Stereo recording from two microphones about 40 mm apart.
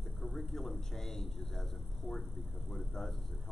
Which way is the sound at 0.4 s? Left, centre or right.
Centre.